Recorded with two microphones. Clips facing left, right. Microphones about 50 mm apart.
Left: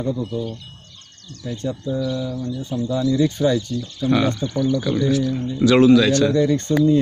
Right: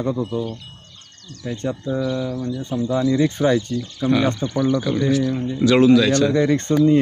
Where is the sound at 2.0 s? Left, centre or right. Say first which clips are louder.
Right 2 dB; right.